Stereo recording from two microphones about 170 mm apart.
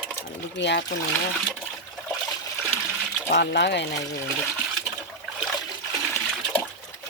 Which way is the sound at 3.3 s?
85° left.